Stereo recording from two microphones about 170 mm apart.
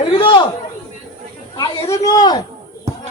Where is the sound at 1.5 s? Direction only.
20° left (ahead or behind).